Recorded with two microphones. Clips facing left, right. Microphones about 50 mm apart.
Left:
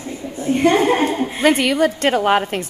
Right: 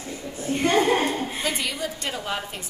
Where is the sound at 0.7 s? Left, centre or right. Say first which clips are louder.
Left 5 dB; left.